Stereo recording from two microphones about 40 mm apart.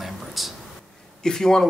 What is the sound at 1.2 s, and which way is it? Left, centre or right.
Speech, centre.